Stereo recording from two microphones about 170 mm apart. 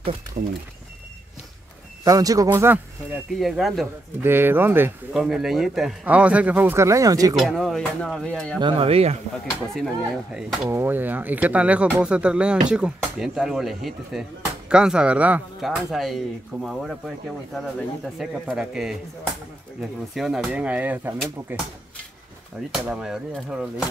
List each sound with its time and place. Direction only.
2.0 s speech: 20° right (ahead or behind)
3.3 s speech: centre (ahead or behind)
4.2 s speech: 10° right (ahead or behind)
5.2 s speech: centre (ahead or behind); by 7.3 s 20° right (ahead or behind)
7.3 s speech: centre (ahead or behind)
8.5 s speech: 30° right (ahead or behind)
9.8 s speech: centre (ahead or behind)
20.2 s speech: 5° right (ahead or behind)
22.7 s speech: 5° right (ahead or behind)